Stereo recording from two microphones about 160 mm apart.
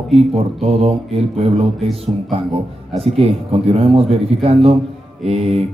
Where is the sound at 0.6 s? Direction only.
40° right (ahead or behind).